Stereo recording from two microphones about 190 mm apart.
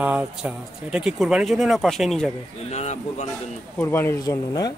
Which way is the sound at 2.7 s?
35° left (ahead or behind).